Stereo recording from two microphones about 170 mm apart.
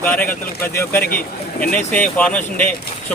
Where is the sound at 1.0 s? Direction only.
55° left (ahead or behind).